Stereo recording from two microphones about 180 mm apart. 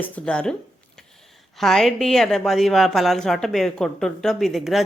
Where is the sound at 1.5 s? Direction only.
Centre (ahead or behind).